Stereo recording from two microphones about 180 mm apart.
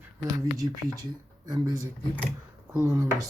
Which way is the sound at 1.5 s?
20° right (ahead or behind).